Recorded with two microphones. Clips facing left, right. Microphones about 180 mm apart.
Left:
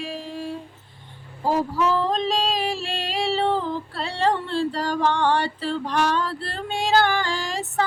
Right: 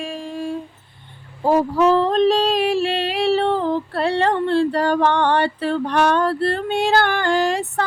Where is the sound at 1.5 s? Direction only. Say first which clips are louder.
Right 6 dB; 60° right (ahead or behind).